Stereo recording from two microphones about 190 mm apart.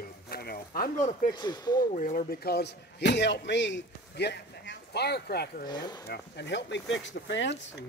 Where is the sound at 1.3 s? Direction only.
20° left (ahead or behind).